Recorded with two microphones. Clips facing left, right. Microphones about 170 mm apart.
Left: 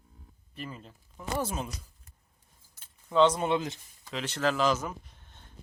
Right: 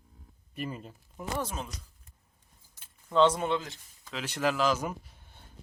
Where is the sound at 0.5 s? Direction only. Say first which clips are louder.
Right 4 dB; 10° right (ahead or behind).